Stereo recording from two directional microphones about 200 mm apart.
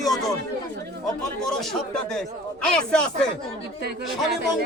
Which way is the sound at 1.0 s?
Centre (ahead or behind).